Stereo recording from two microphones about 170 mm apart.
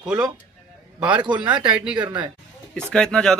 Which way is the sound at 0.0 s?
5° right (ahead or behind).